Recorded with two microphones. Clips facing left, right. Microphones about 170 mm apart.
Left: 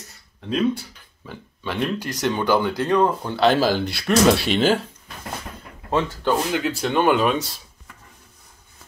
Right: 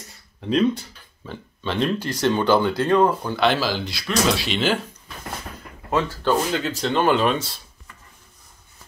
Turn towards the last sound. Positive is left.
turn(degrees=10)  # may be behind; listen again after turning